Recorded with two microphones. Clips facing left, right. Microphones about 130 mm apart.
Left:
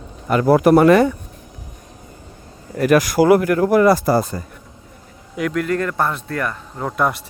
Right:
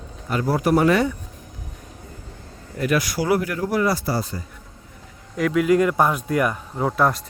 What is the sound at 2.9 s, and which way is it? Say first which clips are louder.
Speech: left 8 dB; 50° left (ahead or behind).